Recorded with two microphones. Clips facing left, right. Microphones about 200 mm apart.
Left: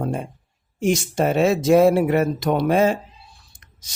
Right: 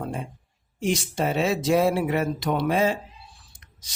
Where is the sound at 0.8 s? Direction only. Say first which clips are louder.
Left 5 dB; 45° left (ahead or behind).